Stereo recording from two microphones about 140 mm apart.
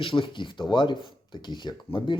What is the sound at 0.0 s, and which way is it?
Speech, 35° left (ahead or behind).